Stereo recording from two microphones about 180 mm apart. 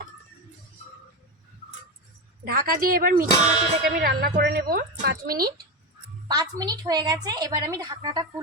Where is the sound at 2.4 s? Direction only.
55° right (ahead or behind).